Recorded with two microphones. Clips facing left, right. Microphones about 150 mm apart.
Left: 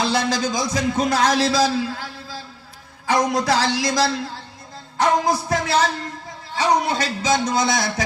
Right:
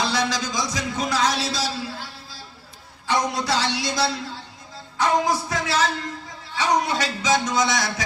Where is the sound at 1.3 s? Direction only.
90° left.